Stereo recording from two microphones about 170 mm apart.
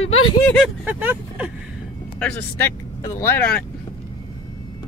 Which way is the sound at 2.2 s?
10° left (ahead or behind).